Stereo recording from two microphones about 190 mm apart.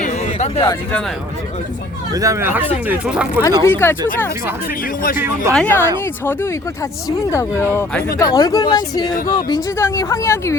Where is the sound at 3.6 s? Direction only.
10° left (ahead or behind).